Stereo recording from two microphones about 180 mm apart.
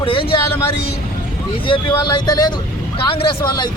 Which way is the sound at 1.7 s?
25° left (ahead or behind).